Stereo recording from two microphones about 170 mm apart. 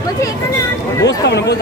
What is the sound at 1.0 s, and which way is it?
Chatter, 85° left.